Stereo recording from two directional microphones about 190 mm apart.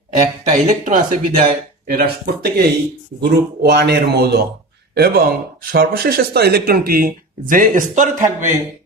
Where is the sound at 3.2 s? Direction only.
60° right (ahead or behind).